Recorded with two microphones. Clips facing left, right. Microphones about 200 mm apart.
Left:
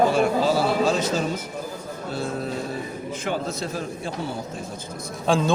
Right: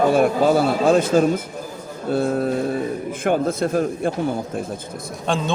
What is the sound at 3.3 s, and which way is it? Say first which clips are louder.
Speech: right 9 dB; 55° right (ahead or behind).